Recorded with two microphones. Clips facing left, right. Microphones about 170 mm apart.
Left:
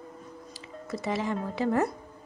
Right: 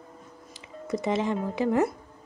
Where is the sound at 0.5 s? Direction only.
20° right (ahead or behind).